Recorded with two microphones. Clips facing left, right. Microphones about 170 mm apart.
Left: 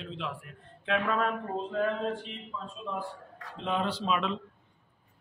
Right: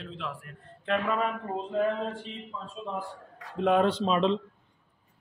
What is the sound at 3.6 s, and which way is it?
Speech, 55° right (ahead or behind).